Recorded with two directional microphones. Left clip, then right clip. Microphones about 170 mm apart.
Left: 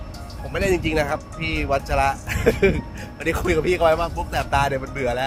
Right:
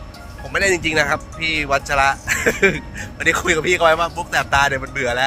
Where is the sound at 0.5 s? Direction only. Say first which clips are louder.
Right 4 dB; centre (ahead or behind).